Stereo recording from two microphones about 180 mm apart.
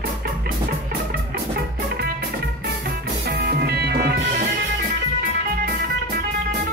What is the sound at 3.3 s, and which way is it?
Music, 60° right (ahead or behind).